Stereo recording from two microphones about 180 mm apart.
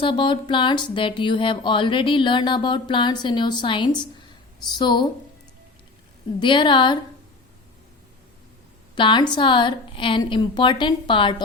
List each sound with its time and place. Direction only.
0.0 s speech: 30° left (ahead or behind)
6.4 s speech: 25° left (ahead or behind)
9.0 s speech: 25° left (ahead or behind)